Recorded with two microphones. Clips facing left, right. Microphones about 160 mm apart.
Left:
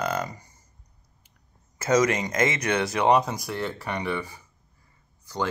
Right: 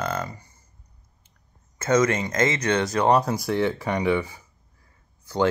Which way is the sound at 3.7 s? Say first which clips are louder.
Right 6 dB; 15° right (ahead or behind).